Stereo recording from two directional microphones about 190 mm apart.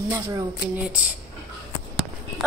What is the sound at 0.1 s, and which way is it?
Speech, 10° right (ahead or behind).